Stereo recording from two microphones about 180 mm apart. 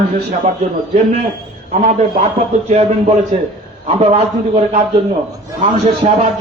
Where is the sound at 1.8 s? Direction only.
40° right (ahead or behind).